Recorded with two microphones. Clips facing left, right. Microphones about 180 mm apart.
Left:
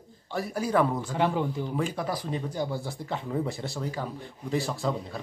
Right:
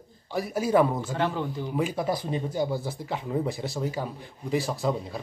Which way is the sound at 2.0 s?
20° right (ahead or behind).